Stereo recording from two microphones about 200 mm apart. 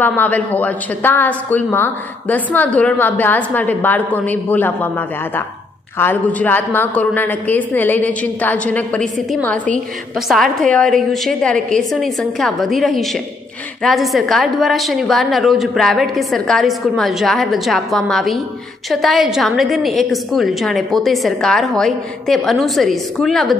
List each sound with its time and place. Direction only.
0.0 s a woman's voice: 10° left (ahead or behind)